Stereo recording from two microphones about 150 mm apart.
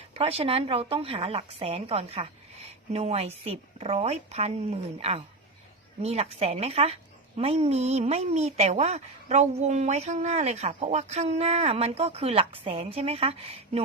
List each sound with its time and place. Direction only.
0.1 s a woman's voice: 40° right (ahead or behind)